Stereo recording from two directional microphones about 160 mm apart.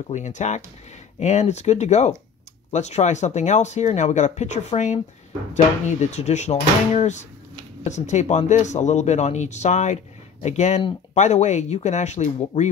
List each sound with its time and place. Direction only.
0.1 s speech: 50° left (ahead or behind)